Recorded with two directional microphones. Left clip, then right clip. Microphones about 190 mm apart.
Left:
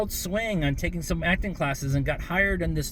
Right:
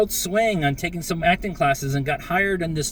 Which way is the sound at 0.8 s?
20° left (ahead or behind).